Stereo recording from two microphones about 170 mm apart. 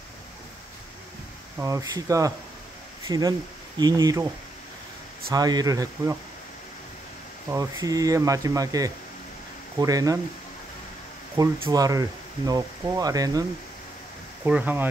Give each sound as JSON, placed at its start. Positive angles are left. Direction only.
{"t": 1.6, "sound": "speech", "side_deg": -20}
{"t": 5.3, "sound": "speech", "side_deg": -20}
{"t": 7.4, "sound": "speech", "side_deg": -20}
{"t": 11.6, "sound": "speech", "side_deg": -20}
{"t": 14.4, "sound": "speech", "side_deg": -10}